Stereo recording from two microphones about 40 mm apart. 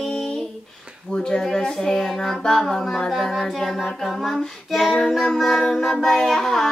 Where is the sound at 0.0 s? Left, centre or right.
Centre.